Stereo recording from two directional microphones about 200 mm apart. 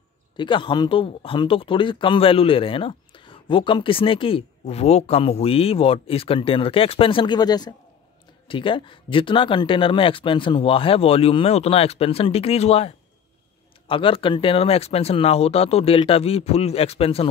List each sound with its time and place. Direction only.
0.4 s speech: 25° left (ahead or behind)